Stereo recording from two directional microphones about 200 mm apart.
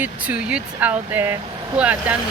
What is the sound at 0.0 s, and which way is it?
Speech, 5° right (ahead or behind).